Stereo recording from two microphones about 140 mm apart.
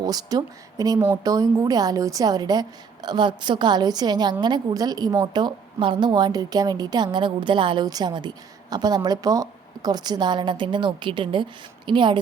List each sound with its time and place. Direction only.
0.0 s a woman's voice: 25° right (ahead or behind)